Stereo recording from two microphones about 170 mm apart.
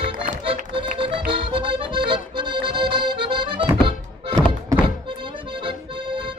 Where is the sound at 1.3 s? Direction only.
30° right (ahead or behind).